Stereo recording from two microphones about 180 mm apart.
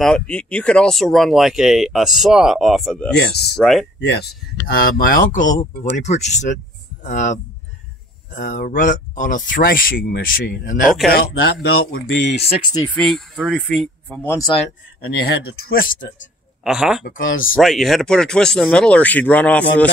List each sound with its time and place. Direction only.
0.0 s speech: 5° left (ahead or behind)
3.2 s speech: 65° left (ahead or behind)
3.5 s speech: centre (ahead or behind)
4.6 s speech: 55° left (ahead or behind)
11.1 s speech: 60° left (ahead or behind); by 12.4 s 80° left
12.4 s speech: 35° left (ahead or behind)
12.9 s speech: centre (ahead or behind)
15.2 s speech: 55° left (ahead or behind)
16.6 s speech: 5° right (ahead or behind)
17.0 s speech: 90° left
17.6 s speech: centre (ahead or behind)